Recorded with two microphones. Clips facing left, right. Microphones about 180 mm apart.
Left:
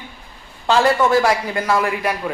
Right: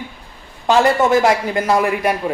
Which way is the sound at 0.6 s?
20° right (ahead or behind).